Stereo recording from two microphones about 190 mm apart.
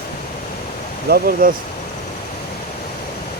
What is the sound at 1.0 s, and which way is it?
Speech, 50° right (ahead or behind).